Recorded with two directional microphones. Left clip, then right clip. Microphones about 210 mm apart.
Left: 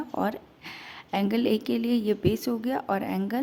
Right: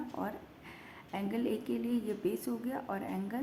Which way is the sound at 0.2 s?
50° left (ahead or behind).